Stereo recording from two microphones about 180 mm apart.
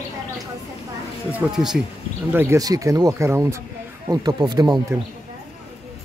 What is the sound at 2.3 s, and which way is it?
Speech, 15° right (ahead or behind).